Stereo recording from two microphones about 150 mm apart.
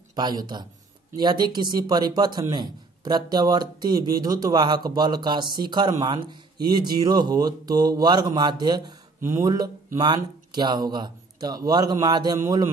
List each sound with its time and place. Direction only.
0.1 s a man's voice: 30° right (ahead or behind)